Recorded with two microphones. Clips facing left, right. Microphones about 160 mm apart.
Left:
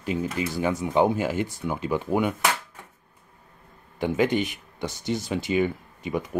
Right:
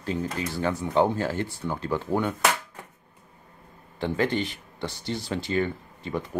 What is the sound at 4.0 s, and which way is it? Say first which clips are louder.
Speech: left 3 dB; 15° left (ahead or behind).